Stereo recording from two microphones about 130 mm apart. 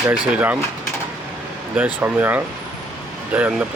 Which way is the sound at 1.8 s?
15° right (ahead or behind).